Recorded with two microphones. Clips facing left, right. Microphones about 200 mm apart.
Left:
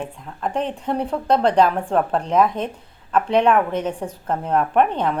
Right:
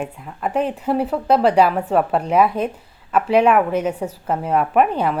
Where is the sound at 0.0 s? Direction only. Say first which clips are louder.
Right 2 dB; 5° right (ahead or behind).